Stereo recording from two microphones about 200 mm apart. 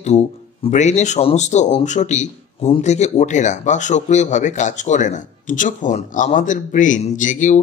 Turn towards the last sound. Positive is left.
turn(degrees=40)  # may be behind; listen again after turning